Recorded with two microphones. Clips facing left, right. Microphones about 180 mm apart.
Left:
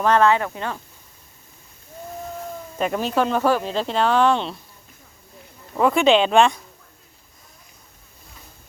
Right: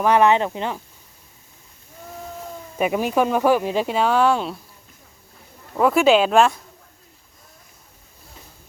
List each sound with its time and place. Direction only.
0.0 s speech: 15° right (ahead or behind)
2.7 s speech: 10° right (ahead or behind)
5.7 s speech: 5° right (ahead or behind)